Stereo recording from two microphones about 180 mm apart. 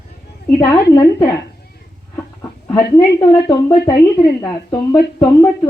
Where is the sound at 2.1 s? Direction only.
10° left (ahead or behind).